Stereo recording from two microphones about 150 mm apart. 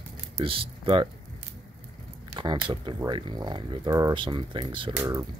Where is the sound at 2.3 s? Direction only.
30° right (ahead or behind).